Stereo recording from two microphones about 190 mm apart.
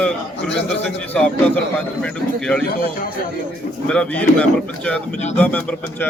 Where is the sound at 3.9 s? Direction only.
5° left (ahead or behind).